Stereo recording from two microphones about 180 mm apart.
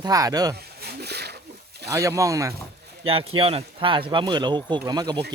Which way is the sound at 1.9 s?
20° right (ahead or behind).